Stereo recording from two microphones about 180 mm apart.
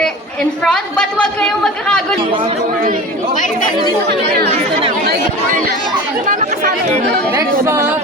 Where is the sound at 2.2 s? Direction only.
30° right (ahead or behind).